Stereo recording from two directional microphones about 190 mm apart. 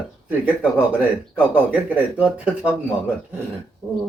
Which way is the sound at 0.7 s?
10° right (ahead or behind).